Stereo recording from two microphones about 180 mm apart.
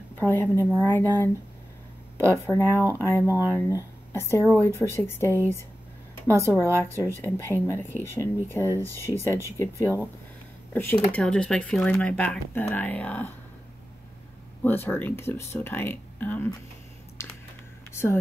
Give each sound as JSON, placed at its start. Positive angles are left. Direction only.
{"t": 0.2, "sound": "speech", "side_deg": 10}
{"t": 2.3, "sound": "speech", "side_deg": 15}
{"t": 6.2, "sound": "speech", "side_deg": -15}
{"t": 6.5, "sound": "speech", "side_deg": 15}
{"t": 14.6, "sound": "speech", "side_deg": 10}